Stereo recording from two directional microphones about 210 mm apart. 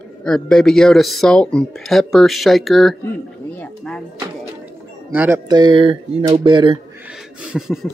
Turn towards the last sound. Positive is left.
turn(degrees=0)  # may be behind; listen again after turning